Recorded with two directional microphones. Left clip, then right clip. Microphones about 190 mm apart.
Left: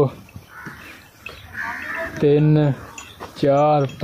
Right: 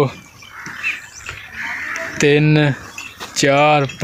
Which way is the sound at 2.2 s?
35° right (ahead or behind).